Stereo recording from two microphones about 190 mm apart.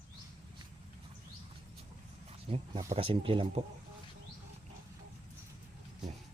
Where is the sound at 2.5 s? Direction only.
30° right (ahead or behind).